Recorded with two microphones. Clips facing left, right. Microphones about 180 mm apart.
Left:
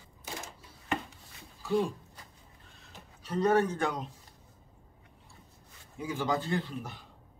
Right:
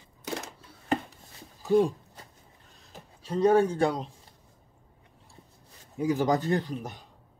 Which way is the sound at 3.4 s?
30° right (ahead or behind).